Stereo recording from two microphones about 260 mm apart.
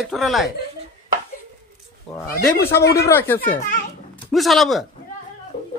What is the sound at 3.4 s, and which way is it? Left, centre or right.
Speech, left.